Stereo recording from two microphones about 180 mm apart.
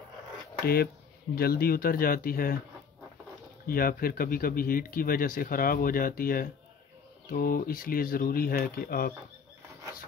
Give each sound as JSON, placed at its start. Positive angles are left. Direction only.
{"t": 1.3, "sound": "speech", "side_deg": 55}
{"t": 3.6, "sound": "speech", "side_deg": 55}